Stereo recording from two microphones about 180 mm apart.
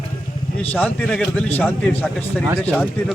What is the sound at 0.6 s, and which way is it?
Speech, 5° left (ahead or behind).